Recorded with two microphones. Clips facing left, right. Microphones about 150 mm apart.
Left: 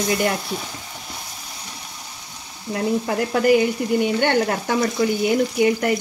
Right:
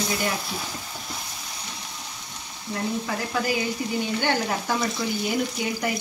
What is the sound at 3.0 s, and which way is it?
Dishes, 60° left (ahead or behind).